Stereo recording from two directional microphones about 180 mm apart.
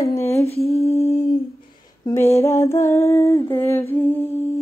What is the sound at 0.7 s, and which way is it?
Humming, 35° left (ahead or behind).